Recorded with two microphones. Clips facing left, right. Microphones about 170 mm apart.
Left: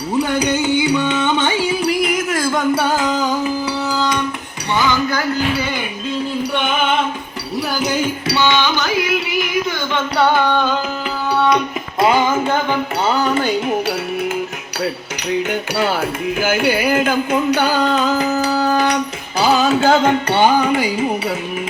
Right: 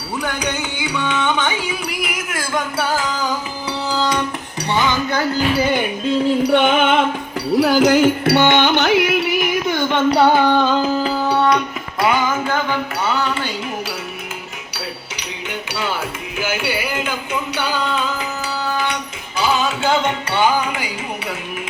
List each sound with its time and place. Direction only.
4.9 s music: 25° right (ahead or behind)
7.6 s carnatic music: 90° right; by 9.5 s 60° right (ahead or behind)
10.2 s carnatic music: 5° right (ahead or behind)
11.5 s music: 25° left (ahead or behind)
13.1 s music: 40° left (ahead or behind)
15.7 s speech: 50° left (ahead or behind)
16.4 s music: 50° left (ahead or behind)
20.1 s music: 55° left (ahead or behind)